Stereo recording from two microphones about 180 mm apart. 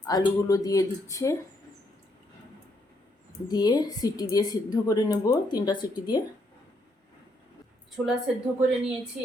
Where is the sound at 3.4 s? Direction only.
20° left (ahead or behind).